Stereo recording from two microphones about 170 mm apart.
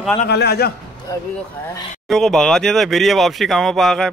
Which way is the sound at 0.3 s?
70° left (ahead or behind).